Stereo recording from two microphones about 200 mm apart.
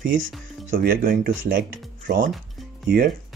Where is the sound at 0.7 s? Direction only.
45° right (ahead or behind).